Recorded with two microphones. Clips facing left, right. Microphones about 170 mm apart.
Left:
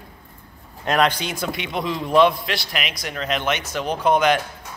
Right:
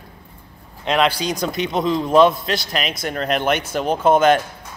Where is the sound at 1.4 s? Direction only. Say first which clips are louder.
Right 4 dB; 40° right (ahead or behind).